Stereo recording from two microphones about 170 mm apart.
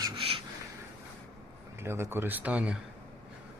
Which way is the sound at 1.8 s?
15° right (ahead or behind).